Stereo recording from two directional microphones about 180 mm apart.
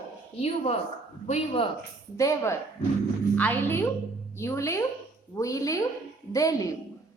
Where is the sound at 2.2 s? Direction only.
15° left (ahead or behind).